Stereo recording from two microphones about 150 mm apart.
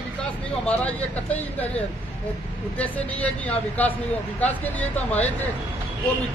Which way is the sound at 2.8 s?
10° left (ahead or behind).